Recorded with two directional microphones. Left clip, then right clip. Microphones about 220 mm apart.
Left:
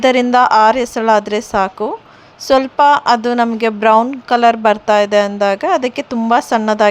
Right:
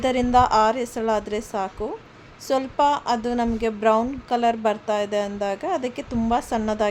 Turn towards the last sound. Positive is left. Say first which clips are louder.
# left 10 dB
turn(degrees=20)  # may be behind; listen again after turning